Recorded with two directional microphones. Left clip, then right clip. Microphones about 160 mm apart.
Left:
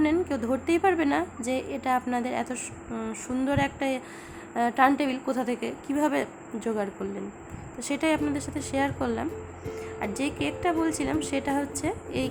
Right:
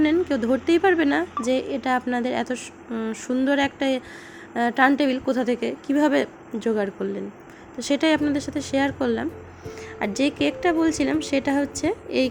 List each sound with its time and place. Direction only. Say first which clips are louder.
0.0 s a woman's voice: right 5 dB; 15° right (ahead or behind)